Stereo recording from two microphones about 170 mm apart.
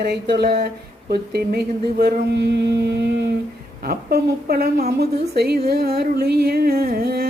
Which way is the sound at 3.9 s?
65° right (ahead or behind).